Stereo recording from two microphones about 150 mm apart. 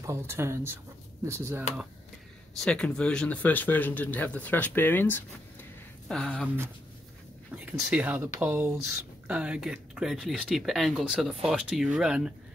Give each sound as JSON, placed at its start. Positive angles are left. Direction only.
{"t": 0.0, "sound": "speech", "side_deg": -20}
{"t": 2.6, "sound": "speech", "side_deg": 5}
{"t": 6.4, "sound": "speech", "side_deg": -15}